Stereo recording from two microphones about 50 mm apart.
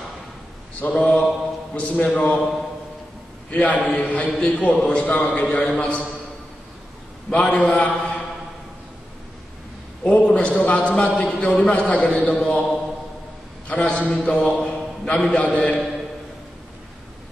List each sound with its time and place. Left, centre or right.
0.7 s a man's voice: left
3.4 s a man's voice: left
7.5 s a man's voice: left
10.0 s a man's voice: left
13.7 s a man's voice: left